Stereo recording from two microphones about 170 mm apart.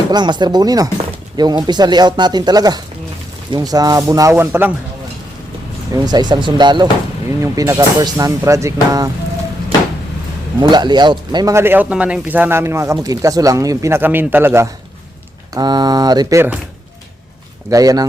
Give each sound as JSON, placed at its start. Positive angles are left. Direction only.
{"t": 0.1, "sound": "speech", "side_deg": -25}
{"t": 5.9, "sound": "speech", "side_deg": -25}
{"t": 10.6, "sound": "speech", "side_deg": -25}
{"t": 15.5, "sound": "speech", "side_deg": -25}
{"t": 17.7, "sound": "speech", "side_deg": -20}